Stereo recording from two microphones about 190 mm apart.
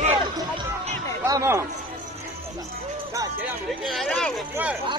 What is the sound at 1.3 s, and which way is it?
Speech, 15° right (ahead or behind).